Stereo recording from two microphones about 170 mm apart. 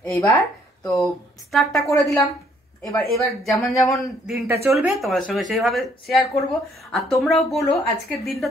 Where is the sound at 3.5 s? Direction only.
Centre (ahead or behind).